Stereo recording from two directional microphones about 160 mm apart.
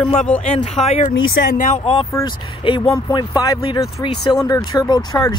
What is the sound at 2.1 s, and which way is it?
Speech, 30° left (ahead or behind).